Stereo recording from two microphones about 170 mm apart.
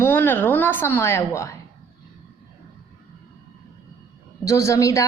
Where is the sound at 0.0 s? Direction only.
10° left (ahead or behind).